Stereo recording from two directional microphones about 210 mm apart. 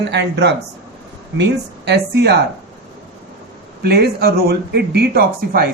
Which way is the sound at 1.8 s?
50° right (ahead or behind).